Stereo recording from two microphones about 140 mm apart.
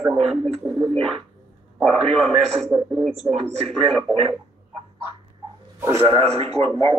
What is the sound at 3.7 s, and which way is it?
Speech, 50° right (ahead or behind).